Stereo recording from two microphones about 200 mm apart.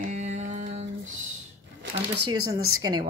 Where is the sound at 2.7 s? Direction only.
20° right (ahead or behind).